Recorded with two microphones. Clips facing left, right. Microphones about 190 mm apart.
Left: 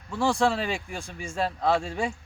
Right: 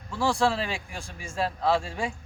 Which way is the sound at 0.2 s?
10° right (ahead or behind).